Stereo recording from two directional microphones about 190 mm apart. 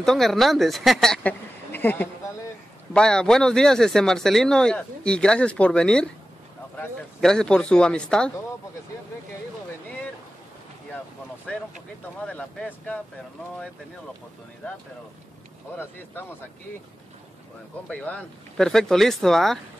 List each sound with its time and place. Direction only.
0.0 s speech: centre (ahead or behind)
12.3 s speech: 5° left (ahead or behind)
17.8 s speech: 5° left (ahead or behind)